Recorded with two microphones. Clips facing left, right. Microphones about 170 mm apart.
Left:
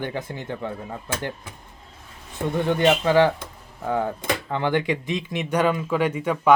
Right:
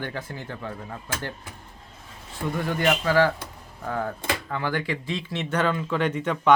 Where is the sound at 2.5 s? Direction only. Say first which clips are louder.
Left 5 dB; 20° left (ahead or behind).